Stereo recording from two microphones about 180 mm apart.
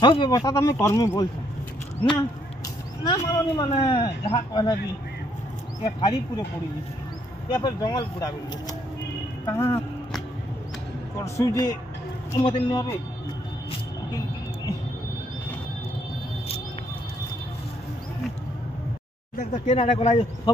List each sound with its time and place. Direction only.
0.0 s speech: 25° left (ahead or behind)
3.1 s speech: 25° left (ahead or behind)
5.9 s speech: 25° left (ahead or behind)
7.4 s speech: 25° left (ahead or behind)
11.1 s speech: 20° left (ahead or behind)
19.3 s speech: 40° left (ahead or behind)